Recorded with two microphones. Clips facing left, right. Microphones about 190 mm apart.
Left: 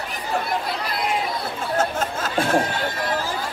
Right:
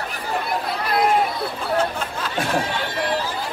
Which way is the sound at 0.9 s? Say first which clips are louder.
Right 11 dB; 55° right (ahead or behind).